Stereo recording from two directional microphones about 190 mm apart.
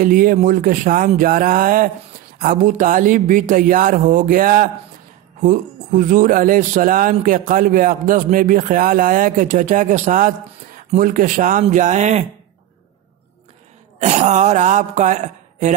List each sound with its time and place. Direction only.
0.0 s a woman's voice: 45° right (ahead or behind)
13.9 s a woman's voice: 35° right (ahead or behind)